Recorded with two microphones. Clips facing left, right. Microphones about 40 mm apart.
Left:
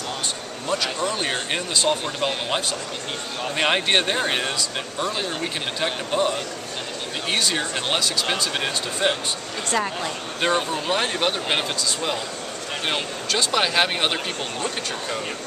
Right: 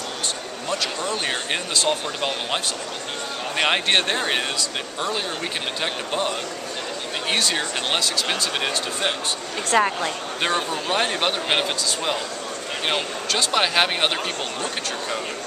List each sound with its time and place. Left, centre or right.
0.7 s speech: centre
9.7 s speech: right
10.5 s speech: centre